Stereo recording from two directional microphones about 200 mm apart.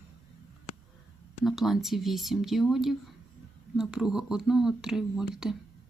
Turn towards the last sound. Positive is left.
turn(degrees=0)  # may be behind; listen again after turning